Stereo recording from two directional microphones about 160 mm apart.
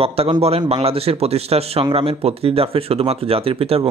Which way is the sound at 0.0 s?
40° right (ahead or behind).